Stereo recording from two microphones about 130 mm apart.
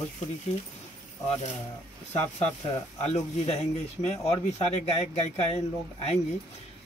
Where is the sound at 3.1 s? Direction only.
55° left (ahead or behind).